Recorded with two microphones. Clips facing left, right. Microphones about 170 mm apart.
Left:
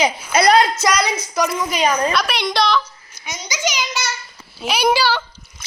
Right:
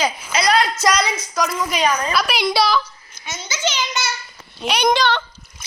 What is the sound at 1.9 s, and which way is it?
Speech, 25° left (ahead or behind).